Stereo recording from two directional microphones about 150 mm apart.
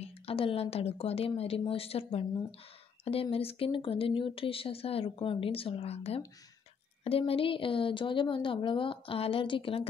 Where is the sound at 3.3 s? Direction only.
40° left (ahead or behind).